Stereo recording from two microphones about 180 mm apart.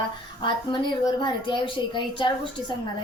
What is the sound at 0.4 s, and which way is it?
A woman's voice, 25° left (ahead or behind).